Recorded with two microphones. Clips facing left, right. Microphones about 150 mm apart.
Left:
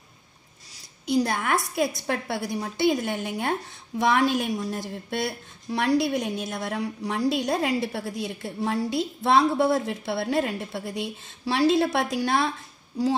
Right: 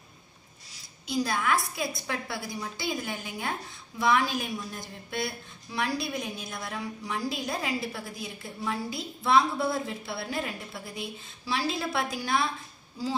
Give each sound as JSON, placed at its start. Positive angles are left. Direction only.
{"t": 1.0, "sound": "a woman's voice", "side_deg": 60}